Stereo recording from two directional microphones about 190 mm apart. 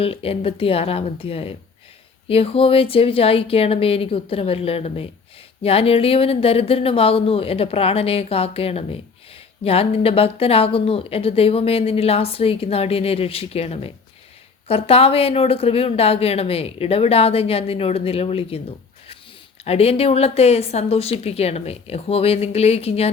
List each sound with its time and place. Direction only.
0.0 s speech: 30° left (ahead or behind)
19.6 s speech: 30° left (ahead or behind)